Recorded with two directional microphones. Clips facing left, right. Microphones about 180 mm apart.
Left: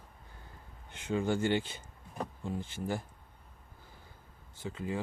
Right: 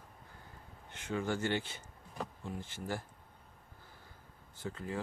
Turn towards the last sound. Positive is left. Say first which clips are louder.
# left 3 dB
turn(degrees=15)  # may be behind; listen again after turning